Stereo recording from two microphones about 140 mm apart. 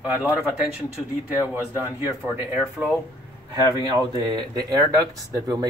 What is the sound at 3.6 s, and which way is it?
Speech, 30° right (ahead or behind).